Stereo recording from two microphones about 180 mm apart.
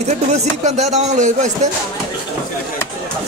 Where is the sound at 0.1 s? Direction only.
40° right (ahead or behind).